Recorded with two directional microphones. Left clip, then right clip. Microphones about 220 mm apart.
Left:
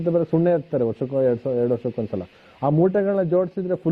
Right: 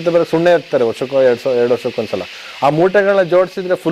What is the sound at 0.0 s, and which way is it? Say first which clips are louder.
Speech: right 8 dB; 20° right (ahead or behind).